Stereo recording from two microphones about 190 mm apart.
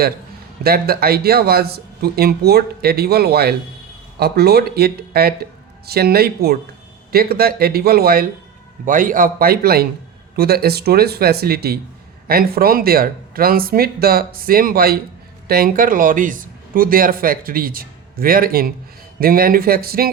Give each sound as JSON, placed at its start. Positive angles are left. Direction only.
{"t": 0.6, "sound": "speech", "side_deg": -55}